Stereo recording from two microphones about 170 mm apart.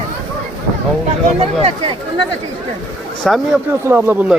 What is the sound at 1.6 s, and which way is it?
Speech, 35° right (ahead or behind).